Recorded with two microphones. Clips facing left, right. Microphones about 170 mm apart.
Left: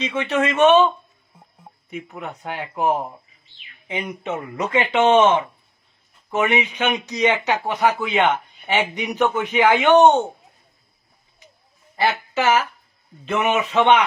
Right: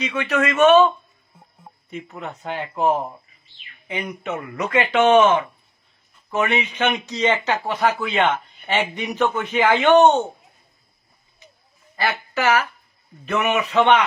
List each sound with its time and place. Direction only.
0.0 s speech: 25° left (ahead or behind)
1.9 s a man's voice: 10° left (ahead or behind)
3.8 s a man's voice: 20° left (ahead or behind)
11.9 s speech: 25° left (ahead or behind)